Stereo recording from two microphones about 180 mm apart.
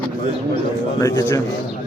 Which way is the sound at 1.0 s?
15° left (ahead or behind).